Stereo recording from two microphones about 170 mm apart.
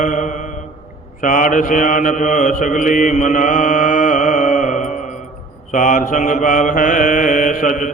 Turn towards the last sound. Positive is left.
turn(degrees=50)  # may be behind; listen again after turning